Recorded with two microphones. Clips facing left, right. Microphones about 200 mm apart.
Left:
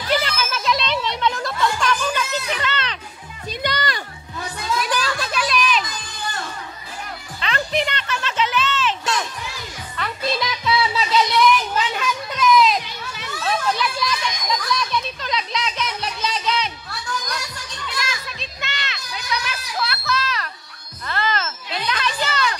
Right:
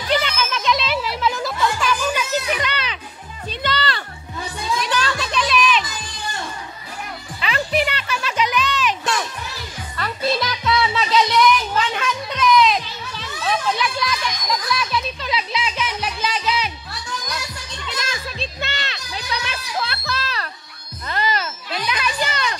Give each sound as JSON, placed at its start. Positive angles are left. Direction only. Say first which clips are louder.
{"t": 0.1, "sound": "music", "louder": "right 1 dB", "side_deg": 5}
{"t": 3.4, "sound": "music", "louder": "right 1 dB", "side_deg": 15}
{"t": 4.7, "sound": "a sound", "louder": "even", "side_deg": 10}
{"t": 7.3, "sound": "music", "louder": "right 2 dB", "side_deg": -10}
{"t": 9.9, "sound": "music", "louder": "right 2 dB", "side_deg": 0}
{"t": 13.4, "sound": "a sound", "louder": "even", "side_deg": 0}
{"t": 14.7, "sound": "music", "louder": "even", "side_deg": -5}
{"t": 17.9, "sound": "children playing", "louder": "right 2 dB", "side_deg": -30}
{"t": 21.1, "sound": "a sound", "louder": "right 1 dB", "side_deg": -15}